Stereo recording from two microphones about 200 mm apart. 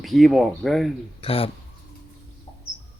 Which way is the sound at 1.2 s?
30° left (ahead or behind).